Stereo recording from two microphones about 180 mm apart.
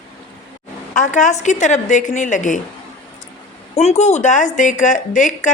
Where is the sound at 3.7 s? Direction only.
35° left (ahead or behind).